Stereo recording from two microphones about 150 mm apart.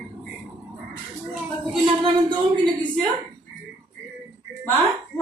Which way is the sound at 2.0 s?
35° right (ahead or behind).